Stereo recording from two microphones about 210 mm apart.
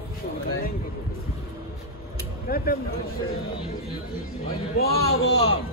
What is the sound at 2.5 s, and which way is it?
Speech, 45° left (ahead or behind).